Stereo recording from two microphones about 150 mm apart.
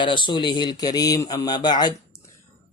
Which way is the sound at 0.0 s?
30° left (ahead or behind).